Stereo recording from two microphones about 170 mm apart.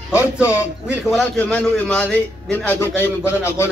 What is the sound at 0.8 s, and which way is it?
A man's voice, 5° right (ahead or behind).